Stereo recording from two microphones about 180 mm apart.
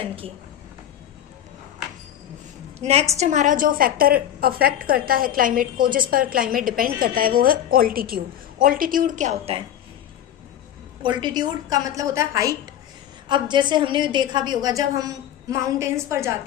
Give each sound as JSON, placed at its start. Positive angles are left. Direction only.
{"t": 2.8, "sound": "a woman's voice", "side_deg": -35}
{"t": 11.0, "sound": "a woman's voice", "side_deg": -25}